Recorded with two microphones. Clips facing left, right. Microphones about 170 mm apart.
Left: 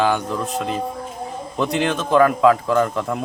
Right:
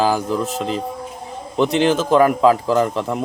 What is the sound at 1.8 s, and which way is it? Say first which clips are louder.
A man's voice: right 1 dB; 30° right (ahead or behind).